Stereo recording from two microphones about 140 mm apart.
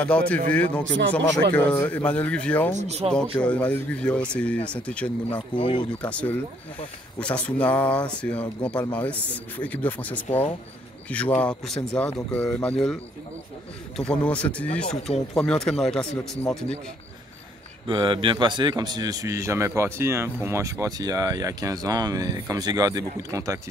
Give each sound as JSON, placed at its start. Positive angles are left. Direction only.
{"t": 0.0, "sound": "speech", "side_deg": 10}
{"t": 2.8, "sound": "speech", "side_deg": -50}
{"t": 3.3, "sound": "speech", "side_deg": 10}
{"t": 5.5, "sound": "speech", "side_deg": 35}
{"t": 6.0, "sound": "speech", "side_deg": 10}
{"t": 13.9, "sound": "speech", "side_deg": 10}
{"t": 17.8, "sound": "a man's voice", "side_deg": -35}